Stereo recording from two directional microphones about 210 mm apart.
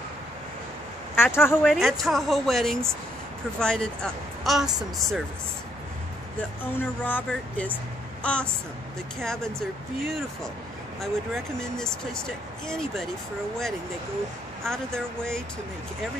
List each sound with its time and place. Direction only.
1.1 s speech: 10° left (ahead or behind)
1.6 s speech: centre (ahead or behind)
6.6 s a woman's voice: 10° left (ahead or behind)
14.6 s speech: 5° left (ahead or behind)